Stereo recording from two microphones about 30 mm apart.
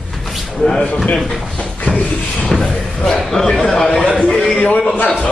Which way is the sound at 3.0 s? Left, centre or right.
Centre.